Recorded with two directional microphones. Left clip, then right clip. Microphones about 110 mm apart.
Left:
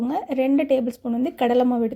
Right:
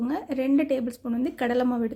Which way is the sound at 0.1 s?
25° left (ahead or behind).